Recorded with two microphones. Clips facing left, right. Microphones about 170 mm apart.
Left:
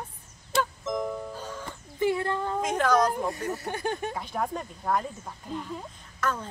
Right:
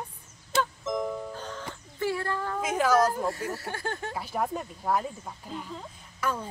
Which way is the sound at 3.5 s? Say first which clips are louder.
Left 3 dB; 20° left (ahead or behind).